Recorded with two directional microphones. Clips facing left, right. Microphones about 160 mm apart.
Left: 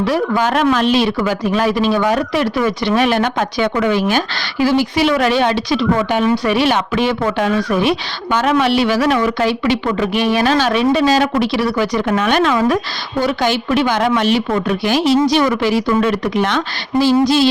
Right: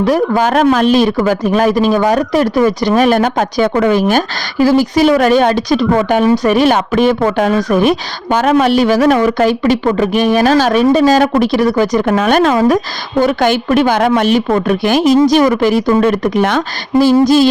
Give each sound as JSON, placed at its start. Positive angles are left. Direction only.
{"t": 0.0, "sound": "speech", "side_deg": -45}